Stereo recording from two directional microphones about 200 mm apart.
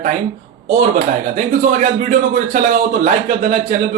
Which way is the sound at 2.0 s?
40° right (ahead or behind).